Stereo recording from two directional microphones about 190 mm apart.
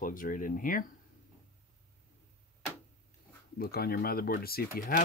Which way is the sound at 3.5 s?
55° left (ahead or behind).